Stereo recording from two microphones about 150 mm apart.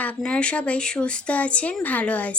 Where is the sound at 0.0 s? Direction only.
10° left (ahead or behind).